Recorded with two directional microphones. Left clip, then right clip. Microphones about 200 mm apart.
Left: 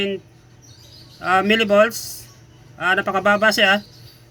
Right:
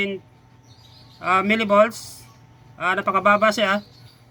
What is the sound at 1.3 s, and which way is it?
Speech, 90° right.